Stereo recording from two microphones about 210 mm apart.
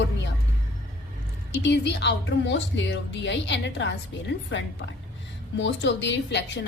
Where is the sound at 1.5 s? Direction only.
60° left (ahead or behind).